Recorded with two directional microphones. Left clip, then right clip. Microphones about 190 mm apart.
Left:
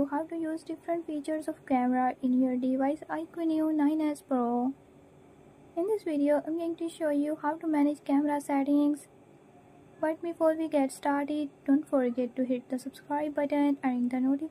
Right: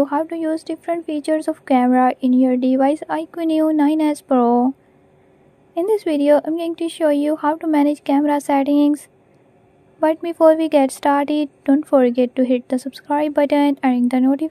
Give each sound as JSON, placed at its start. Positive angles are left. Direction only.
{"t": 0.0, "sound": "a woman's voice", "side_deg": -50}
{"t": 5.8, "sound": "a woman's voice", "side_deg": -50}